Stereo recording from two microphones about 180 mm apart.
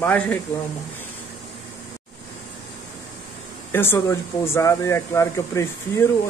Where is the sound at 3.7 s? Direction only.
15° left (ahead or behind).